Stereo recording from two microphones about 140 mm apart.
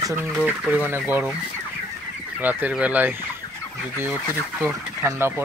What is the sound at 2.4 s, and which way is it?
Speech, 10° right (ahead or behind).